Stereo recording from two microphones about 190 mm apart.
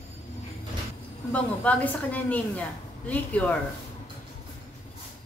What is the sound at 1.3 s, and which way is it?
Speech, 10° left (ahead or behind).